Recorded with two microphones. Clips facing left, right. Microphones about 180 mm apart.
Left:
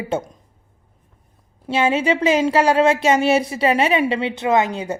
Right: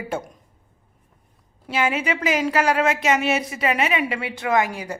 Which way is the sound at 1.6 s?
30° left (ahead or behind).